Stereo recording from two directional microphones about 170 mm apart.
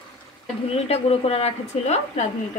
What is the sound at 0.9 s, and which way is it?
A woman's voice, 35° left (ahead or behind).